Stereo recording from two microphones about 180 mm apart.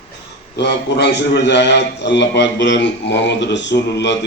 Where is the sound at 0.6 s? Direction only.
70° left (ahead or behind).